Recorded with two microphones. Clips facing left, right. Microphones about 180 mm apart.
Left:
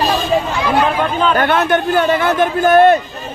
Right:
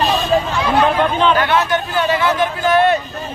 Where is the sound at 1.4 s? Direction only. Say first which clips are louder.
Left 2 dB; 55° left (ahead or behind).